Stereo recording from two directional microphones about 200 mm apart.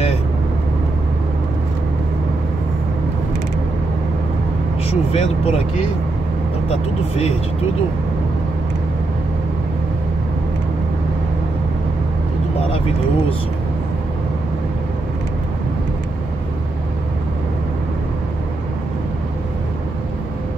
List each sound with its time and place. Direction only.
4.8 s speech: 30° left (ahead or behind)
6.7 s speech: 30° left (ahead or behind)